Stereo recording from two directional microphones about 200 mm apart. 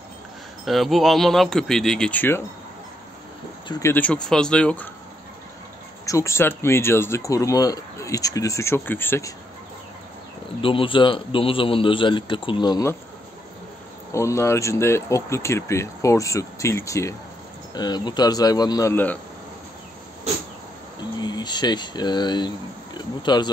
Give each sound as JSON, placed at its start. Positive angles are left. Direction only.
{"t": 0.7, "sound": "speech", "side_deg": 0}
{"t": 3.6, "sound": "speech", "side_deg": 10}
{"t": 6.0, "sound": "speech", "side_deg": 15}
{"t": 10.6, "sound": "a man's voice", "side_deg": 25}
{"t": 14.1, "sound": "a man's voice", "side_deg": 15}
{"t": 21.2, "sound": "speech", "side_deg": 20}